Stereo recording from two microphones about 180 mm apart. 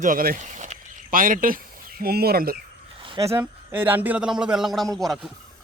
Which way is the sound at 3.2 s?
10° right (ahead or behind).